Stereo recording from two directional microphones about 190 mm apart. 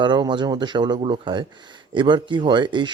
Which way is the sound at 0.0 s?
25° right (ahead or behind).